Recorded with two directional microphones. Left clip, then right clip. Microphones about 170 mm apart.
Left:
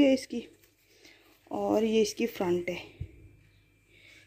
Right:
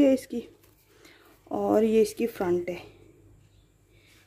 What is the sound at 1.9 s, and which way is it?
Speech, 5° right (ahead or behind).